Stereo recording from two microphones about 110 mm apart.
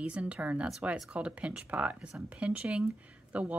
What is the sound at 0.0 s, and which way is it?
Speech, 10° right (ahead or behind).